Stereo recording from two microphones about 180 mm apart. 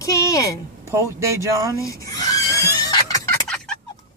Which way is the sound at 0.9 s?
15° right (ahead or behind).